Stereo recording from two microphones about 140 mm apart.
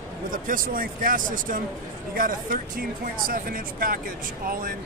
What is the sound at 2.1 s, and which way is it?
Speech, 85° right.